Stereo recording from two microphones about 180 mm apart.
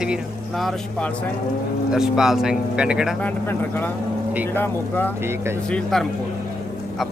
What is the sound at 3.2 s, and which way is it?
Speech, 10° left (ahead or behind).